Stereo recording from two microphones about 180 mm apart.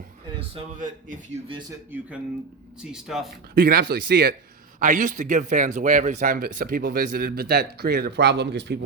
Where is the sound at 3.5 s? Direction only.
55° right (ahead or behind).